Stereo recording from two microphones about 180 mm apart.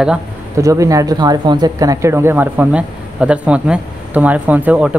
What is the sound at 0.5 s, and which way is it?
Speech, 15° right (ahead or behind).